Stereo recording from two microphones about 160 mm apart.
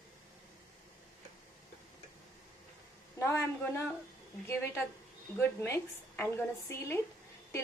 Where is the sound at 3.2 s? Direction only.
15° left (ahead or behind).